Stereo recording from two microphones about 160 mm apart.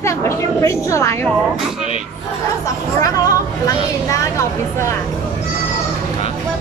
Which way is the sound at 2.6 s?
20° left (ahead or behind).